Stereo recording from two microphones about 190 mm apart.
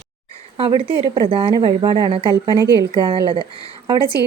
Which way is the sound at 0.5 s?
30° right (ahead or behind).